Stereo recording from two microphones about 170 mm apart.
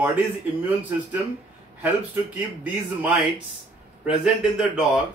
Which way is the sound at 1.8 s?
10° right (ahead or behind).